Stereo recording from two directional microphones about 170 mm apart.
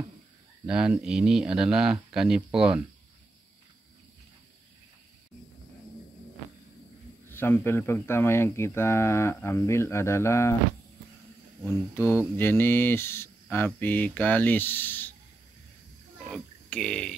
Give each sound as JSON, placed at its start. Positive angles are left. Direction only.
{"t": 0.7, "sound": "speech", "side_deg": -5}
{"t": 7.2, "sound": "speech", "side_deg": 10}
{"t": 11.6, "sound": "speech", "side_deg": 10}
{"t": 16.3, "sound": "a sound", "side_deg": 5}